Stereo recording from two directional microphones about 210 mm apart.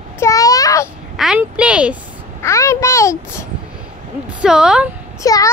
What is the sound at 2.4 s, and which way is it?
A child's voice, 15° left (ahead or behind).